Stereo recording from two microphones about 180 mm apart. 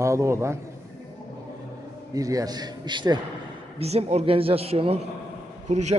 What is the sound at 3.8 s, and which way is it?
Speech, 35° right (ahead or behind).